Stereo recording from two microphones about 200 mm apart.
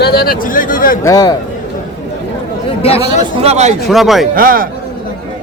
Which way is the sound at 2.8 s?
30° left (ahead or behind).